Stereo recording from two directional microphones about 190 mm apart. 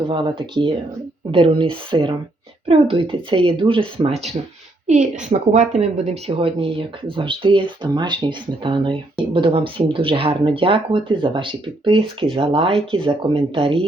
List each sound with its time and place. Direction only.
0.1 s a woman's voice: 25° right (ahead or behind)